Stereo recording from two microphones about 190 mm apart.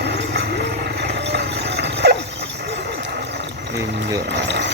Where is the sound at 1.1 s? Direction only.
65° right (ahead or behind).